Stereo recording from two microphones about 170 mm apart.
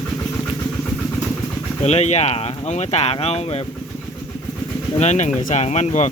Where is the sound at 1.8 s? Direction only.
40° left (ahead or behind).